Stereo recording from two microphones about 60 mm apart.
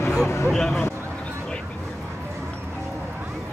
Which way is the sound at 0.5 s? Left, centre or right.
Centre.